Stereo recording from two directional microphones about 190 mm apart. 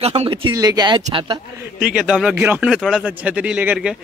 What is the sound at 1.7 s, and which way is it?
Speech, 5° right (ahead or behind).